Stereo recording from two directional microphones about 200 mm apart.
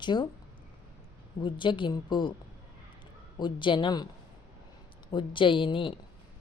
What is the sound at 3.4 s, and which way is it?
Speech, 25° left (ahead or behind).